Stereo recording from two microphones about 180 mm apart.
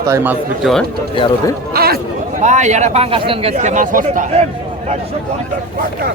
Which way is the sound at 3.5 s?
45° right (ahead or behind).